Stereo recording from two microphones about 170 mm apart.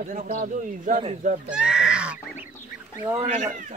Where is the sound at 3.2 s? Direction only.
45° right (ahead or behind).